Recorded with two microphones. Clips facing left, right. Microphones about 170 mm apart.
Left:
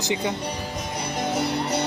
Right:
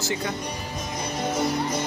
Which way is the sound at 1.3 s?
70° left (ahead or behind).